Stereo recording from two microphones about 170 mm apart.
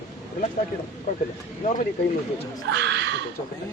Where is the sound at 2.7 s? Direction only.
90° right.